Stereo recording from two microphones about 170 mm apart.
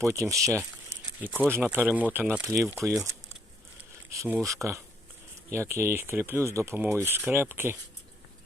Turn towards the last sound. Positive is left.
turn(degrees=-15)  # may be behind; listen again after turning